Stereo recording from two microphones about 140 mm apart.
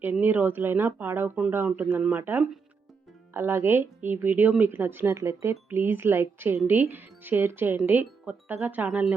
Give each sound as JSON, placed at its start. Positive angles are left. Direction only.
{"t": 0.0, "sound": "speech", "side_deg": -15}